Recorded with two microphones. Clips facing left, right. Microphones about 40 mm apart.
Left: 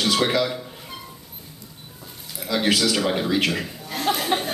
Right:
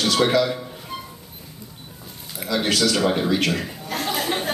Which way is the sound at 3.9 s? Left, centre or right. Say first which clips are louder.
Right 2 dB; right.